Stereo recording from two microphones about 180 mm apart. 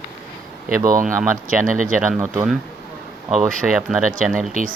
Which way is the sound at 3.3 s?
5° right (ahead or behind).